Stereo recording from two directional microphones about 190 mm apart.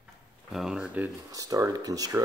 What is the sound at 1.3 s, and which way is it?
Speech, 20° right (ahead or behind).